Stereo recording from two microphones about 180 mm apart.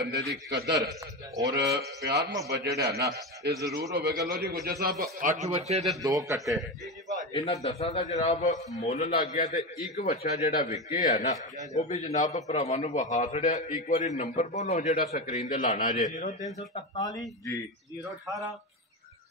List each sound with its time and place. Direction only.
0.0 s a man's voice: 65° right (ahead or behind)
5.2 s speech: 40° right (ahead or behind)
6.0 s a man's voice: 15° right (ahead or behind)
7.4 s a man's voice: 35° left (ahead or behind)
15.0 s a man's voice: 55° left (ahead or behind)
15.2 s a man's voice: 45° left (ahead or behind)
16.7 s speech: 20° left (ahead or behind)